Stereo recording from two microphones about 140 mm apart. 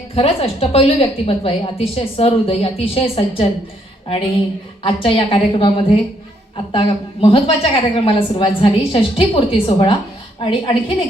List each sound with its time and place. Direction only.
0.1 s a woman's voice: 45° left (ahead or behind)
4.8 s a woman's voice: 40° left (ahead or behind)